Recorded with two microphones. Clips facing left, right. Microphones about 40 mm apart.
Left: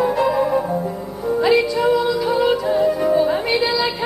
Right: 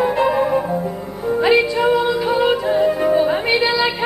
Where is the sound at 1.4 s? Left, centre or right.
Right.